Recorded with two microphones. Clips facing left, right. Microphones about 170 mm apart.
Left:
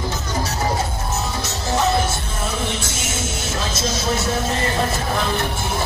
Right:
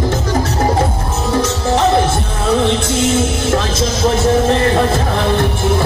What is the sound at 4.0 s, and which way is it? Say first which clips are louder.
Music: right 11 dB; 60° right (ahead or behind).